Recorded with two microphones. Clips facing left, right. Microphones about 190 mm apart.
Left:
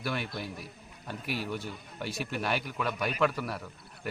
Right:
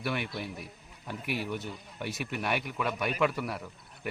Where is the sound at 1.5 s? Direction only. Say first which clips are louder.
Even; 20° right (ahead or behind).